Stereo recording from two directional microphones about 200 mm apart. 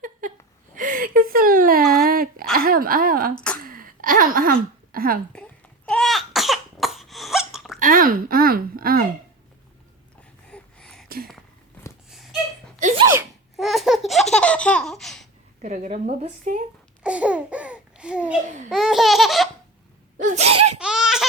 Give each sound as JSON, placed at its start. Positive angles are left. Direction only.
{"t": 0.0, "sound": "a sound", "side_deg": -40}
{"t": 5.9, "sound": "cough", "side_deg": 0}
{"t": 7.8, "sound": "speech", "side_deg": -45}
{"t": 10.5, "sound": "a sound", "side_deg": 5}
{"t": 12.8, "sound": "sneeze", "side_deg": -30}
{"t": 13.6, "sound": "laughter", "side_deg": 0}
{"t": 15.6, "sound": "speech", "side_deg": -40}
{"t": 17.0, "sound": "babbling", "side_deg": -5}
{"t": 18.4, "sound": "speech", "side_deg": -35}
{"t": 18.7, "sound": "laughter", "side_deg": 0}
{"t": 20.1, "sound": "sneeze", "side_deg": -40}
{"t": 20.7, "sound": "laughter", "side_deg": -5}